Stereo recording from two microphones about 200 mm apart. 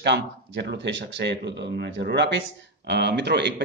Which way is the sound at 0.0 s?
60° right (ahead or behind).